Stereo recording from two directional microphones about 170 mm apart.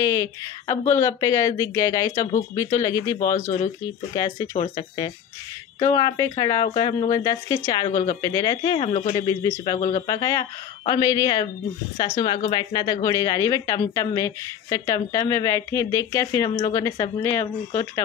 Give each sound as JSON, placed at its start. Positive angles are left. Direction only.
{"t": 0.0, "sound": "speech", "side_deg": 20}
{"t": 9.3, "sound": "speech", "side_deg": 25}
{"t": 9.8, "sound": "speech", "side_deg": 50}
{"t": 10.0, "sound": "speech", "side_deg": 20}